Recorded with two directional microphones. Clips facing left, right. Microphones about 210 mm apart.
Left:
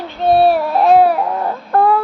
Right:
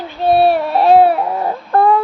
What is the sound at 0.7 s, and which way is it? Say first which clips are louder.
Baby cry: right 3 dB; 30° right (ahead or behind).